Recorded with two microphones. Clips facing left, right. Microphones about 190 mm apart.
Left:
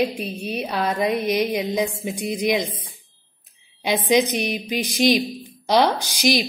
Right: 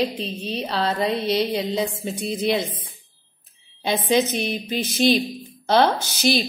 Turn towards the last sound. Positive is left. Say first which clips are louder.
# left 1 dB
turn(degrees=15)  # may be behind; listen again after turning